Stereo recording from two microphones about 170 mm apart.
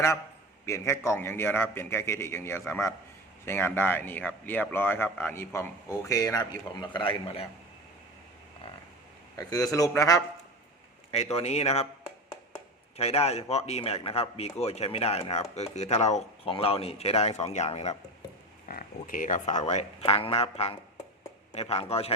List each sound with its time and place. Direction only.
0.6 s speech: 15° left (ahead or behind); by 7.4 s 30° left (ahead or behind)
9.3 s a man's voice: 20° left (ahead or behind)
11.1 s speech: 35° left (ahead or behind)
18.7 s speech: 55° left (ahead or behind); by 22.1 s 35° left (ahead or behind)